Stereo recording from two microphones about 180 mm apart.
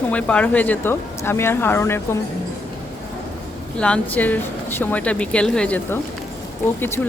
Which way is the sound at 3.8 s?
5° left (ahead or behind).